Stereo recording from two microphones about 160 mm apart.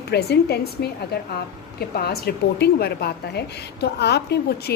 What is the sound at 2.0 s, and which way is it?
A woman's voice, 75° left (ahead or behind).